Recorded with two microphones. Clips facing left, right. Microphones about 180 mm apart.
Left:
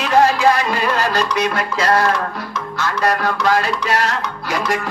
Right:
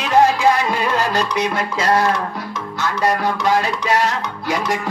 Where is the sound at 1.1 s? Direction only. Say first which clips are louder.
Left 1 dB; 20° right (ahead or behind).